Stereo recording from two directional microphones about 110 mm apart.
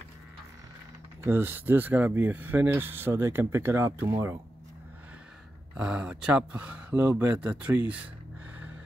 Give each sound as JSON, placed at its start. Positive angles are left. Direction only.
{"t": 1.2, "sound": "speech", "side_deg": -20}
{"t": 5.8, "sound": "speech", "side_deg": -10}